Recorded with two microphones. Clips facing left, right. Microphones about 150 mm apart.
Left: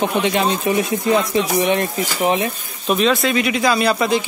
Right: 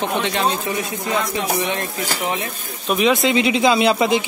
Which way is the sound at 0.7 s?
20° left (ahead or behind).